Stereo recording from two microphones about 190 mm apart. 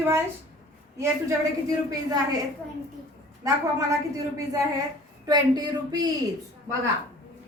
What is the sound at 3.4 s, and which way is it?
Speech, 15° right (ahead or behind).